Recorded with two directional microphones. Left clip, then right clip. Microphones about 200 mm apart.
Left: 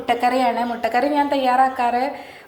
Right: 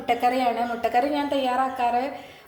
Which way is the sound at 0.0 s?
5° left (ahead or behind).